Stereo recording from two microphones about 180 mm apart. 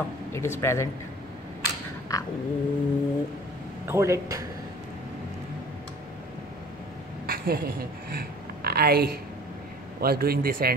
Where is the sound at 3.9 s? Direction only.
15° right (ahead or behind).